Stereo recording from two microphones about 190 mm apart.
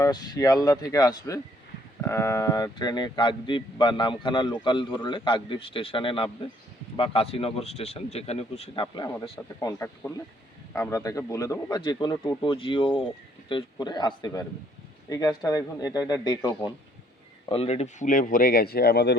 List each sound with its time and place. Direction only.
0.0 s speech: 20° left (ahead or behind)
9.6 s speech: 15° left (ahead or behind)
17.5 s speech: 30° left (ahead or behind); by 19.1 s 55° left (ahead or behind)